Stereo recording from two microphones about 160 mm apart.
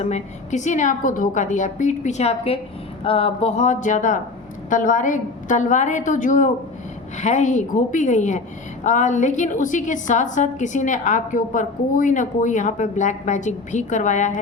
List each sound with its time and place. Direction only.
0.0 s a woman's voice: 45° left (ahead or behind)